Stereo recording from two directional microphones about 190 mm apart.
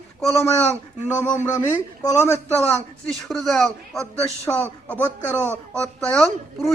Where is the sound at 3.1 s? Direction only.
Centre (ahead or behind).